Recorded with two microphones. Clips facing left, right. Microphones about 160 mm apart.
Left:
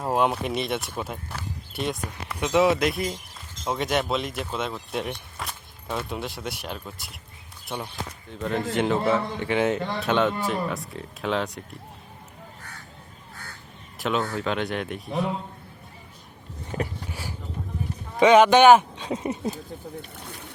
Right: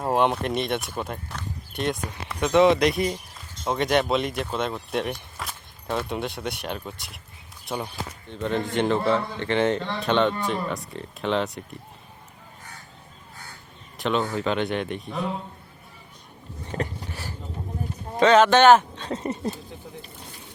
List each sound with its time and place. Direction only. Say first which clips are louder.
0.0 s speech: right 1 dB; centre (ahead or behind)
8.3 s speech: right 1 dB; 5° left (ahead or behind)
14.0 s speech: right 2 dB; centre (ahead or behind)
16.7 s a sound: even; 10° left (ahead or behind)
18.2 s speech: left 1 dB; 10° left (ahead or behind)
20.2 s a sound: left 4 dB; 60° left (ahead or behind)